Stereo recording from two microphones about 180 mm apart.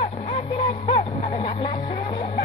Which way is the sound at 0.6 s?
30° left (ahead or behind).